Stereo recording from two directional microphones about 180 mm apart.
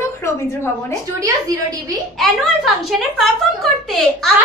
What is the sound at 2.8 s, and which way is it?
A woman's voice, centre (ahead or behind).